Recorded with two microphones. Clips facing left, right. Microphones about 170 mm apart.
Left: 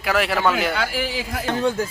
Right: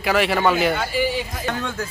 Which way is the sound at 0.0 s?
Centre (ahead or behind).